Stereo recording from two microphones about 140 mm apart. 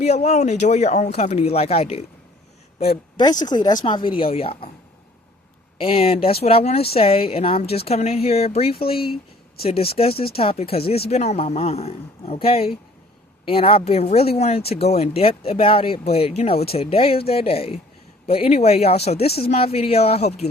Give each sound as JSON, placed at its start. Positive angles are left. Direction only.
{"t": 0.0, "sound": "a woman's voice", "side_deg": 50}
{"t": 3.2, "sound": "speech", "side_deg": 30}
{"t": 5.8, "sound": "speech", "side_deg": 45}